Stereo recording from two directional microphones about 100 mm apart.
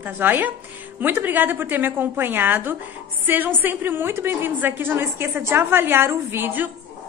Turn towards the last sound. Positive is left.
turn(degrees=-20)  # may be behind; listen again after turning